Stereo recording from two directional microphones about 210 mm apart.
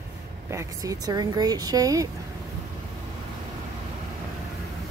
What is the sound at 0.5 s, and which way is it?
Speech, 15° right (ahead or behind).